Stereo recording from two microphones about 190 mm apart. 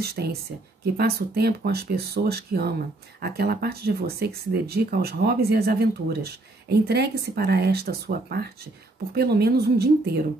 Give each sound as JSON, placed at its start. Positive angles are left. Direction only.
{"t": 0.0, "sound": "speech", "side_deg": -55}